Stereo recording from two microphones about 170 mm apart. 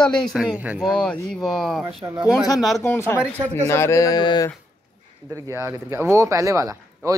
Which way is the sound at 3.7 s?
15° left (ahead or behind).